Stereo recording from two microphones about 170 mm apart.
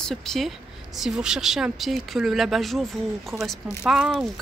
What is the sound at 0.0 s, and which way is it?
Speech, centre (ahead or behind).